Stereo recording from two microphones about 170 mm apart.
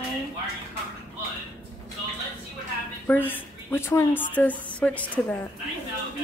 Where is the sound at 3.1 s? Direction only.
10° left (ahead or behind).